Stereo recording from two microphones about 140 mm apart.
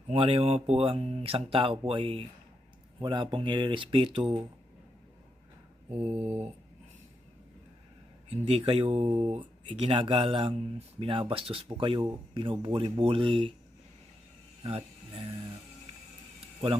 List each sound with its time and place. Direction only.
0.1 s speech: 45° right (ahead or behind)
6.0 s speech: 45° right (ahead or behind)
8.3 s speech: 45° right (ahead or behind)
14.6 s a sound: 40° right (ahead or behind)